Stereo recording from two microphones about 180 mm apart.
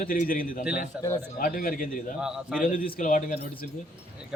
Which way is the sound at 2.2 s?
5° right (ahead or behind).